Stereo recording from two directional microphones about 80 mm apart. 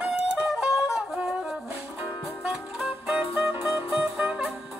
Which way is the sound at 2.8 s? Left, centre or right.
Centre.